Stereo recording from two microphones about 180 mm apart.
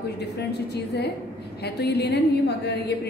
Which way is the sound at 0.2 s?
65° left (ahead or behind).